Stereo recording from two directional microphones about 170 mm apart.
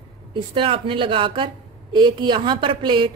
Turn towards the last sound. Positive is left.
turn(degrees=-30)  # may be behind; listen again after turning